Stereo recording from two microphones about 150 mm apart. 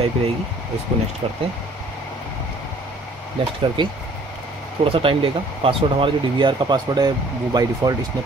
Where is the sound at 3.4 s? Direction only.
35° right (ahead or behind).